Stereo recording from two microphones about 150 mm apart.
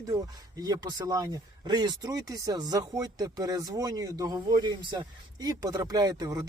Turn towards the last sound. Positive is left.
turn(degrees=-25)  # may be behind; listen again after turning